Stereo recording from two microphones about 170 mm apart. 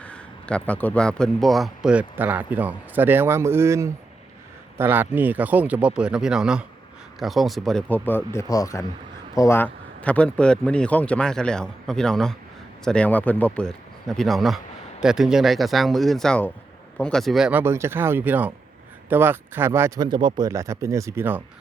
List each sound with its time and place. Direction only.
0.0 s a man's voice: 5° left (ahead or behind); by 20.1 s 15° right (ahead or behind)
20.1 s a man's voice: 25° right (ahead or behind)